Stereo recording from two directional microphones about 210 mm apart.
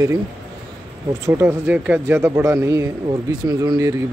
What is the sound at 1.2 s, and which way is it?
Speech, 10° right (ahead or behind).